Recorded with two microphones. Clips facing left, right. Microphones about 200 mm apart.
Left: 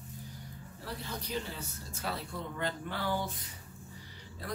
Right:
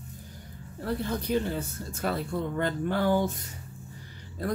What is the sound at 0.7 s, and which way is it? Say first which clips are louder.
Speech: right 11 dB; 50° right (ahead or behind).